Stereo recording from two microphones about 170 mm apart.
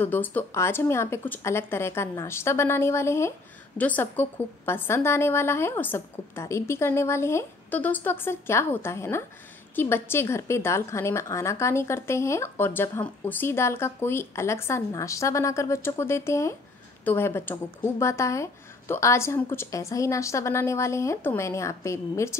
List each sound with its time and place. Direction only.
0.0 s speech: 10° left (ahead or behind)